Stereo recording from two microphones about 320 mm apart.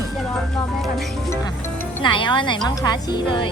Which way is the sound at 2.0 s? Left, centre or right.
Centre.